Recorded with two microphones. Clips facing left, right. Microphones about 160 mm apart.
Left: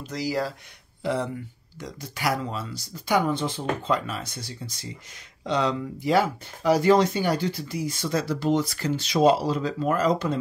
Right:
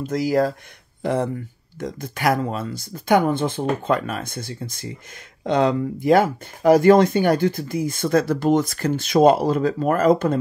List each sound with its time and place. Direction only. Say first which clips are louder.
0.0 s speech: right 8 dB; 50° right (ahead or behind)